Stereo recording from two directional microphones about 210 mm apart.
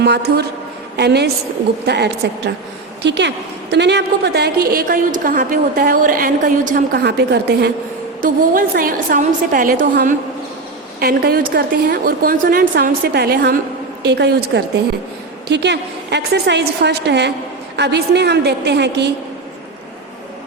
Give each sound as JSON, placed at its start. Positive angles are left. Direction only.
{"t": 0.0, "sound": "a woman's voice", "side_deg": -50}
{"t": 8.2, "sound": "a woman's voice", "side_deg": -40}